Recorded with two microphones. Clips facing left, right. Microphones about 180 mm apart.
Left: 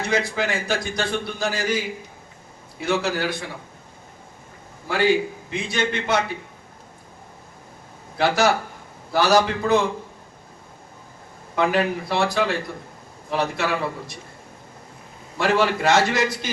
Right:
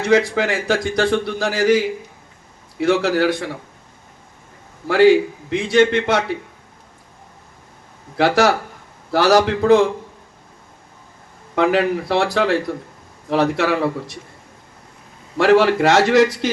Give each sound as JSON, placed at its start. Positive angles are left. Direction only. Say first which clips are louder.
{"t": 0.0, "sound": "a man's voice", "louder": "right 7 dB", "side_deg": -90}
{"t": 2.8, "sound": "a man's voice", "louder": "right 7 dB", "side_deg": -85}
{"t": 5.5, "sound": "a man's voice", "louder": "right 12 dB", "side_deg": -85}
{"t": 8.2, "sound": "a man's voice", "louder": "right 4 dB", "side_deg": -90}
{"t": 11.5, "sound": "a man's voice", "louder": "right 4 dB", "side_deg": -75}
{"t": 15.4, "sound": "a man's voice", "louder": "right 7 dB", "side_deg": -75}